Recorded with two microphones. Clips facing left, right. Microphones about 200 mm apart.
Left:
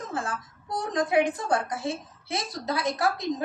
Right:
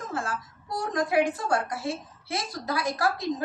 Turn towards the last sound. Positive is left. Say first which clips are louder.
# even
turn(degrees=20)  # may be behind; listen again after turning